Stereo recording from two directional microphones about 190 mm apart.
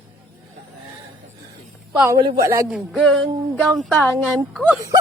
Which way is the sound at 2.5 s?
15° right (ahead or behind).